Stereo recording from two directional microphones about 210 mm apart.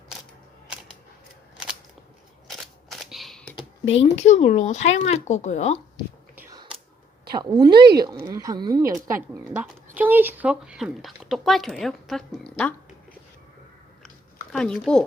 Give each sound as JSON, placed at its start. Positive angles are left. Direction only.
{"t": 2.5, "sound": "a sound", "side_deg": 0}
{"t": 3.8, "sound": "speech", "side_deg": 25}
{"t": 7.3, "sound": "speech", "side_deg": -20}
{"t": 9.5, "sound": "speech", "side_deg": -5}
{"t": 14.5, "sound": "speech", "side_deg": 5}